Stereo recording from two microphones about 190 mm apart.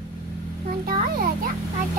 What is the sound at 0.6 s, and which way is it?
Speech, 50° right (ahead or behind).